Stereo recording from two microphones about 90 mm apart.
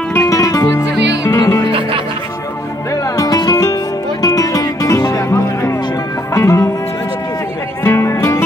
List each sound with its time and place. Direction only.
0.2 s music: 40° left (ahead or behind)
1.7 s music: 85° right
3.3 s music: 45° left (ahead or behind)
7.8 s music: 30° left (ahead or behind)